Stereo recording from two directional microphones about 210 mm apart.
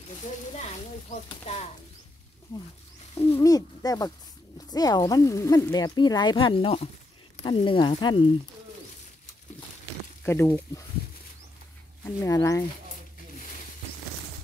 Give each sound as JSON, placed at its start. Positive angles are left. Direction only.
{"t": 3.3, "sound": "speech", "side_deg": 15}
{"t": 10.2, "sound": "speech", "side_deg": 10}
{"t": 12.0, "sound": "speech", "side_deg": 15}